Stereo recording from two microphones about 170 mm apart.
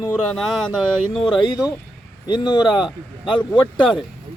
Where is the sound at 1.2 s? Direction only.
30° left (ahead or behind).